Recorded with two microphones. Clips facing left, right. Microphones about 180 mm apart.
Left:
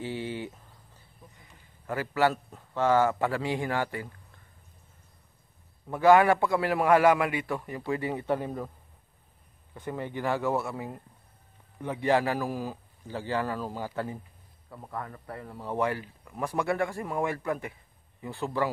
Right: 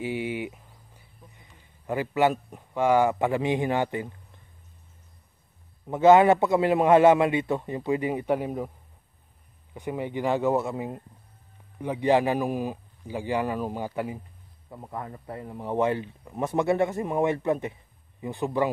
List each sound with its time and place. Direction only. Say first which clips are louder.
0.0 s a sound: right 4 dB; 15° right (ahead or behind)
5.9 s speech: right 3 dB; 20° right (ahead or behind)
9.8 s a man's voice: right 4 dB; 15° right (ahead or behind)